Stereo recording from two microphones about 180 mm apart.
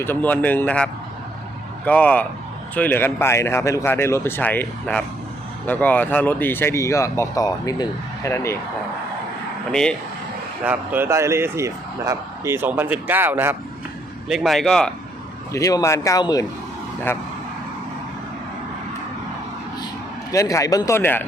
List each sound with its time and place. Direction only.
0.0 s speech: 10° left (ahead or behind)
10.6 s speech: 10° right (ahead or behind)
14.3 s a man's voice: centre (ahead or behind)
15.5 s a man's voice: 20° left (ahead or behind)
20.3 s speech: 15° left (ahead or behind)